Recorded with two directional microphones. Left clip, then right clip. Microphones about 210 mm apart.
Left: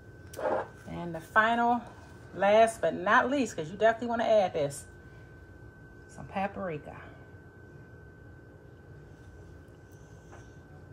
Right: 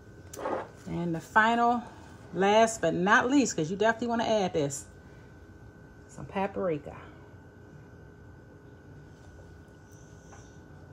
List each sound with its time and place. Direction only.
0.9 s a woman's voice: 50° right (ahead or behind)
6.3 s speech: 50° right (ahead or behind)